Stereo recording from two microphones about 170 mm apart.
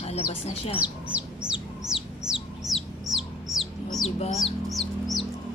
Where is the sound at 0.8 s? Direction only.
10° right (ahead or behind).